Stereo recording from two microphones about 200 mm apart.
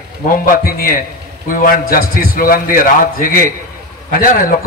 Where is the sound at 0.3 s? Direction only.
50° left (ahead or behind).